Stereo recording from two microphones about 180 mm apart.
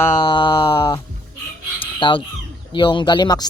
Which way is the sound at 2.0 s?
25° left (ahead or behind).